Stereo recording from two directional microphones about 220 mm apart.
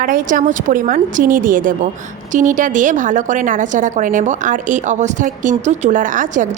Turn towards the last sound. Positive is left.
turn(degrees=-35)  # may be behind; listen again after turning